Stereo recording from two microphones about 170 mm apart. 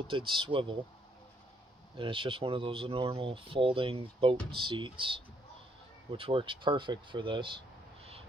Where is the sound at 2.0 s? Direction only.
30° right (ahead or behind).